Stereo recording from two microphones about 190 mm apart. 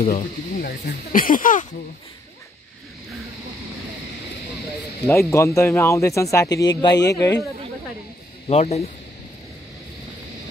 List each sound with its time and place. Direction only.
0.0 s speech: 45° left (ahead or behind)
5.0 s speech: 15° left (ahead or behind)
8.5 s speech: 35° left (ahead or behind)